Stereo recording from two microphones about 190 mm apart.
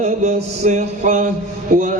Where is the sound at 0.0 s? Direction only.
35° right (ahead or behind).